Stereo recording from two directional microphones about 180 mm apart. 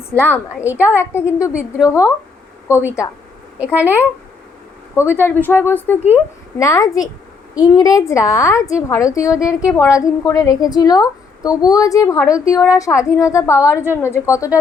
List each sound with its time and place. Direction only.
0.1 s a woman's voice: 10° left (ahead or behind)
2.6 s a woman's voice: 10° right (ahead or behind)
5.2 s a woman's voice: 10° left (ahead or behind)
9.6 s speech: 5° right (ahead or behind)
9.8 s a woman's voice: 15° left (ahead or behind)